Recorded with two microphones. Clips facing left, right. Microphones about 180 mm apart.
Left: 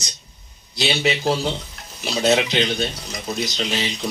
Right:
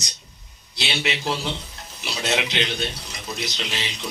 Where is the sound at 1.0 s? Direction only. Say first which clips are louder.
Left 5 dB; 40° left (ahead or behind).